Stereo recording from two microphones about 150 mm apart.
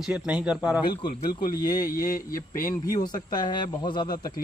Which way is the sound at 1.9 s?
70° left (ahead or behind).